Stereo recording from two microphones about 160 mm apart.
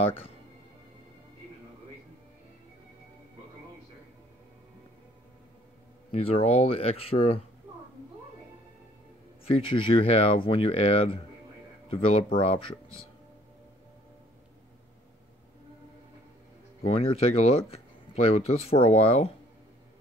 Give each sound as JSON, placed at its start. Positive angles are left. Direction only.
{"t": 0.0, "sound": "speech", "side_deg": 35}
{"t": 6.1, "sound": "speech", "side_deg": 40}
{"t": 7.7, "sound": "a sound", "side_deg": -10}
{"t": 9.5, "sound": "speech", "side_deg": 35}
{"t": 16.8, "sound": "speech", "side_deg": 35}